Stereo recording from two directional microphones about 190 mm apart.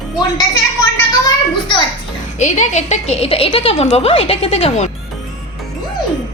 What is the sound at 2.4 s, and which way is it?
A woman's voice, 40° left (ahead or behind).